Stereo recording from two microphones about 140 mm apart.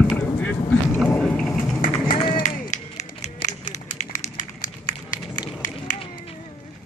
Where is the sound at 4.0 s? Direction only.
70° left (ahead or behind).